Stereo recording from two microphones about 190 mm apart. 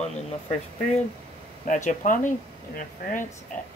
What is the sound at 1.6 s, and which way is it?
Speech, 40° left (ahead or behind).